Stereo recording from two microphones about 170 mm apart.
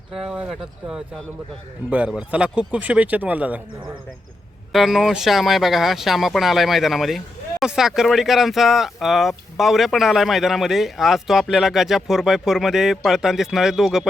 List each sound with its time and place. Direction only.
0.1 s speech: 5° right (ahead or behind)
4.7 s speech: centre (ahead or behind)